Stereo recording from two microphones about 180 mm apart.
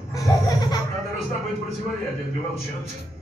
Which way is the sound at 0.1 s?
20° left (ahead or behind).